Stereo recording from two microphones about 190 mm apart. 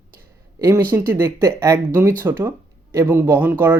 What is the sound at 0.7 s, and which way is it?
Speech, 10° right (ahead or behind).